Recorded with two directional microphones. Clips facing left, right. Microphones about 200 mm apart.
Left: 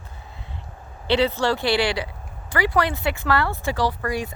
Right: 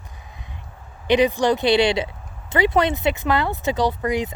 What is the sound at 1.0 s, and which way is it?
Speech, 15° right (ahead or behind).